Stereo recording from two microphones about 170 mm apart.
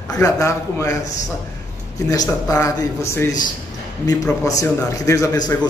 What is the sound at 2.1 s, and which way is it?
A man's voice, 20° left (ahead or behind).